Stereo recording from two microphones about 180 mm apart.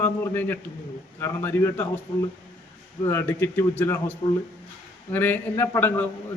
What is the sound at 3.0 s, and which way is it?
Speech, 10° left (ahead or behind).